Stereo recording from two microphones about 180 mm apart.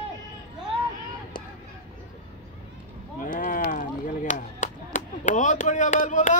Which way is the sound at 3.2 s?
50° left (ahead or behind).